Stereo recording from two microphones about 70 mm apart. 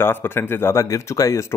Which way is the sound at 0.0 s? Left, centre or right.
Left.